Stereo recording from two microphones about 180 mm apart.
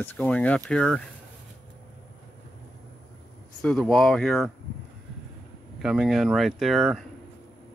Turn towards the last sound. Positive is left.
turn(degrees=0)  # may be behind; listen again after turning